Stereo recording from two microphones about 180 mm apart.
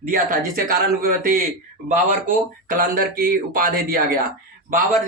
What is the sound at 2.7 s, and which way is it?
Speech, 55° right (ahead or behind).